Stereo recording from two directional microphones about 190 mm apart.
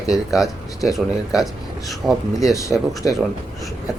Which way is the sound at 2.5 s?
15° left (ahead or behind).